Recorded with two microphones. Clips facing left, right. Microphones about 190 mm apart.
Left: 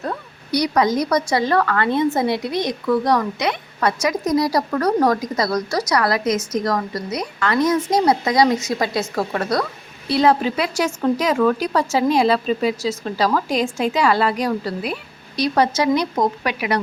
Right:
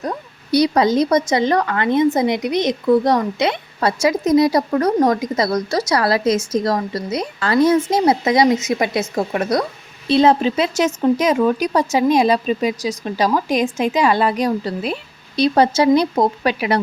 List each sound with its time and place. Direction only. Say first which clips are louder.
0.0 s speech: right 2 dB; 20° right (ahead or behind)